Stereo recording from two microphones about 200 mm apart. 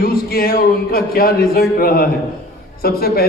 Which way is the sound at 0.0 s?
50° left (ahead or behind).